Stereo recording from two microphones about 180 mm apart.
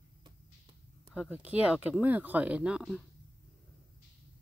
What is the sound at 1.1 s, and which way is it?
Speech, 5° right (ahead or behind).